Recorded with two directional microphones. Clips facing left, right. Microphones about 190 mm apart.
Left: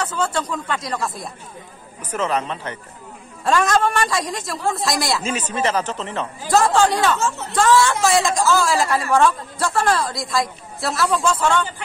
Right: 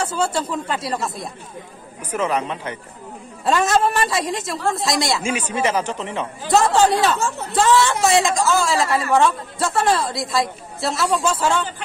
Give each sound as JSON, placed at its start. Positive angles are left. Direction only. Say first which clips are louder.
{"t": 0.0, "sound": "a man's voice", "louder": "right 1 dB", "side_deg": -10}
{"t": 3.8, "sound": "speech", "louder": "even", "side_deg": -25}
{"t": 4.1, "sound": "a man's voice", "louder": "right 1 dB", "side_deg": 0}
{"t": 5.2, "sound": "speech", "louder": "right 1 dB", "side_deg": -10}
{"t": 6.4, "sound": "a man's voice", "louder": "right 1 dB", "side_deg": 0}